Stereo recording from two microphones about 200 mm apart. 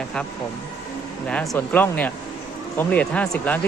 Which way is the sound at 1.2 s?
5° left (ahead or behind).